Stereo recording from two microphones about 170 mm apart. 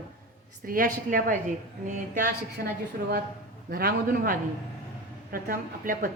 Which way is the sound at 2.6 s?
60° right (ahead or behind).